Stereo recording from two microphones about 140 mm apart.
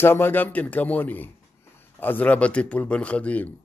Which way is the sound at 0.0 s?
15° left (ahead or behind).